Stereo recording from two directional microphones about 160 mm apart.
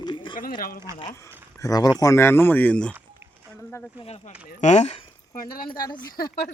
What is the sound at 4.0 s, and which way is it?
Speech, 40° left (ahead or behind).